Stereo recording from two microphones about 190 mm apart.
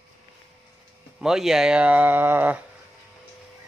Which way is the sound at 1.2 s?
Centre (ahead or behind).